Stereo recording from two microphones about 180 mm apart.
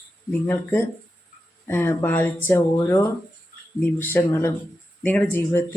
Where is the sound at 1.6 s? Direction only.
15° left (ahead or behind).